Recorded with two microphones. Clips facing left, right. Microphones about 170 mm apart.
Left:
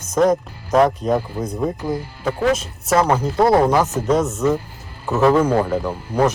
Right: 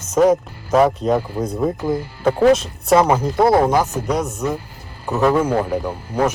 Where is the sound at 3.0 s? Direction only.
10° right (ahead or behind).